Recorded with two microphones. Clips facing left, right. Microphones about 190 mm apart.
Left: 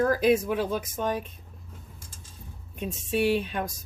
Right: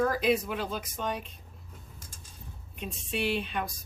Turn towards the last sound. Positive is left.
turn(degrees=45)  # may be behind; listen again after turning